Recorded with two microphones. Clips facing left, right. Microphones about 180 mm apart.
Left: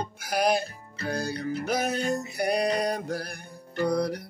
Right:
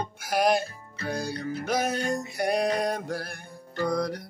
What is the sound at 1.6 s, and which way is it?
Music, centre (ahead or behind).